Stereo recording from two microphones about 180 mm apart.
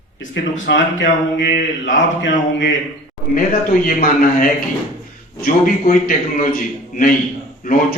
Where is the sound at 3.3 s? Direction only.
50° left (ahead or behind).